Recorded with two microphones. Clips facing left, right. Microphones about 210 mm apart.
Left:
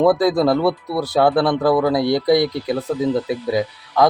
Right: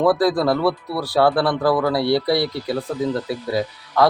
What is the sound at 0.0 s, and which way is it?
Speech, 20° left (ahead or behind).